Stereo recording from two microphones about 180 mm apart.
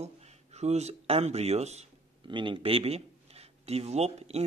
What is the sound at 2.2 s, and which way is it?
Speech, 25° right (ahead or behind).